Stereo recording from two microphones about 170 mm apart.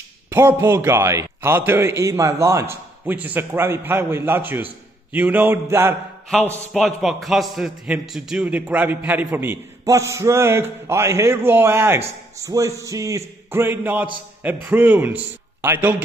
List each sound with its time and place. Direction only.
0.3 s a man's voice: 15° right (ahead or behind)
6.3 s a man's voice: 5° left (ahead or behind); by 16.0 s 10° right (ahead or behind)